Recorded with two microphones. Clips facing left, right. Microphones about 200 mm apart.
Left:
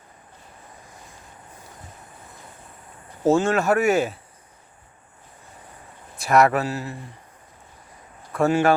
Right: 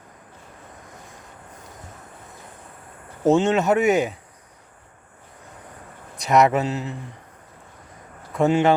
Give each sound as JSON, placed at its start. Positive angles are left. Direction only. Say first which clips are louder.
{"t": 3.2, "sound": "speech", "louder": "right 1 dB", "side_deg": -20}
{"t": 6.1, "sound": "speech", "louder": "right 1 dB", "side_deg": -20}
{"t": 8.3, "sound": "speech", "louder": "right 1 dB", "side_deg": -20}